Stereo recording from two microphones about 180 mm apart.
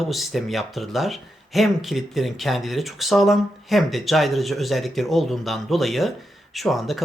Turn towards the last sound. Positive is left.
turn(degrees=0)  # may be behind; listen again after turning